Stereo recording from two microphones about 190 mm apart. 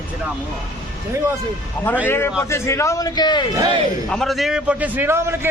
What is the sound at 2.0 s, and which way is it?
A man's voice, 10° left (ahead or behind).